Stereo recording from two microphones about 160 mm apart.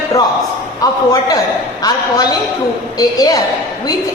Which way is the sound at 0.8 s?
20° left (ahead or behind).